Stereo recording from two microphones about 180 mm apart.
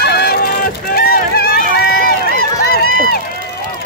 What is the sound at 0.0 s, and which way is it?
Run, 60° left (ahead or behind).